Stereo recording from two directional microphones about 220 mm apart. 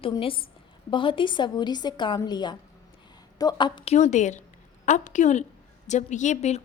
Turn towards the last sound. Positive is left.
turn(degrees=30)  # may be behind; listen again after turning